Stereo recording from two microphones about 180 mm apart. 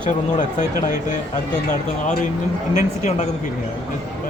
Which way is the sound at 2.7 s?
40° left (ahead or behind).